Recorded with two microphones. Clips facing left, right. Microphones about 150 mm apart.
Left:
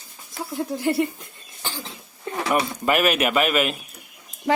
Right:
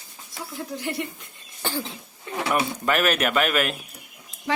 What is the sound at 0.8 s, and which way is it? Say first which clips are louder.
Speech: left 8 dB; 35° left (ahead or behind).